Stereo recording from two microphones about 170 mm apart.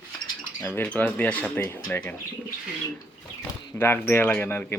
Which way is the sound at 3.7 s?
15° left (ahead or behind).